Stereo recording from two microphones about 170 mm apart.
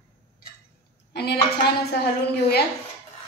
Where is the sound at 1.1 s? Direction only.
75° left (ahead or behind).